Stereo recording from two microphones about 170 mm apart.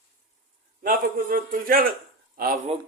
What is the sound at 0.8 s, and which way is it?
A man's voice, 60° right (ahead or behind).